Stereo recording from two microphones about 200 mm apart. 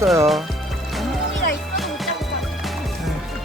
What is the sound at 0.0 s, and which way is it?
Music, 15° right (ahead or behind).